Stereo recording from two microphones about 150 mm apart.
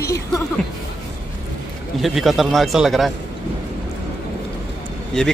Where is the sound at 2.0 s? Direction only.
Centre (ahead or behind).